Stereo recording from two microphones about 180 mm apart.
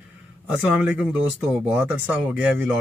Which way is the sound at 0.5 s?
5° right (ahead or behind).